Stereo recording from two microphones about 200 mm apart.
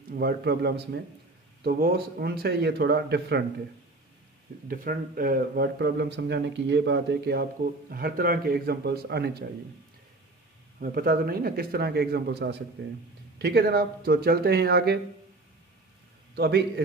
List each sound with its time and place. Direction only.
0.1 s speech: 50° right (ahead or behind)
4.6 s speech: 45° right (ahead or behind)
10.8 s speech: 50° right (ahead or behind)
16.3 s speech: 55° right (ahead or behind)